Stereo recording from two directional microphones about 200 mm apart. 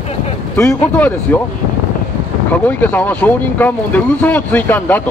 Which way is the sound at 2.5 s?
10° left (ahead or behind).